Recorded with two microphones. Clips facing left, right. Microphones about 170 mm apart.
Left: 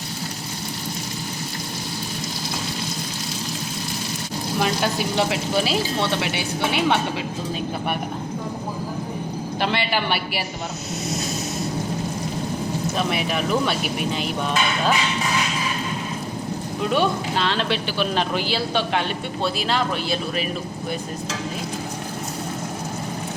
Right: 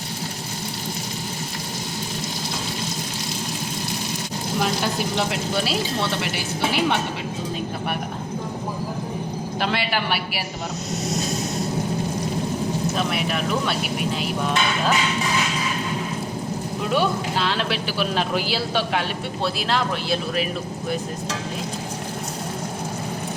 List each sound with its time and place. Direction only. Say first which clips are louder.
4.6 s speech: left 2 dB; centre (ahead or behind)
9.6 s speech: left 1 dB; centre (ahead or behind)
13.0 s speech: left 1 dB; centre (ahead or behind)
16.9 s speech: even; 5° right (ahead or behind)